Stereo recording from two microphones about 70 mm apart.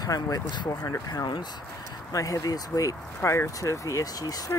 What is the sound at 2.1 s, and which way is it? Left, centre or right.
Speech, left.